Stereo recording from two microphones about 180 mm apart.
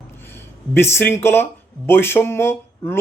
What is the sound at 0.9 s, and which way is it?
A man's voice, 15° left (ahead or behind).